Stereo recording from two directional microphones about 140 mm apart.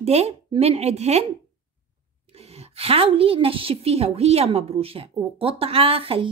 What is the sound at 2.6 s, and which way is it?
A woman's voice, 45° right (ahead or behind).